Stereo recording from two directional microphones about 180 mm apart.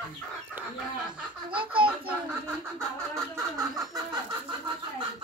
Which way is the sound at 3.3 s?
20° right (ahead or behind).